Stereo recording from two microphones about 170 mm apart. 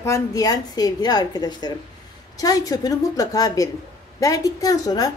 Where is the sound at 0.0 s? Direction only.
20° left (ahead or behind).